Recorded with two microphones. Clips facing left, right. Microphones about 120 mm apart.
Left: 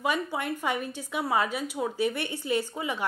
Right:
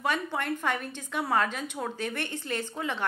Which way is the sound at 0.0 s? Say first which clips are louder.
Left 1 dB; 10° left (ahead or behind).